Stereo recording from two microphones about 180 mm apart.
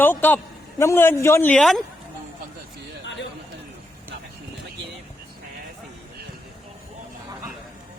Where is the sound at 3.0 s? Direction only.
80° left.